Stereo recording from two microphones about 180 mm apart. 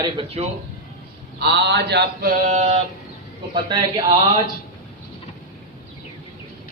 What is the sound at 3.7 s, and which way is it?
Speech, 25° right (ahead or behind).